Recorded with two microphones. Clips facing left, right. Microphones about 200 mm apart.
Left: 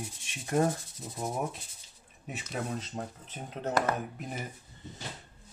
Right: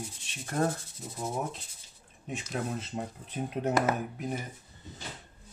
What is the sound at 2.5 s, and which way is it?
Speech, 5° right (ahead or behind).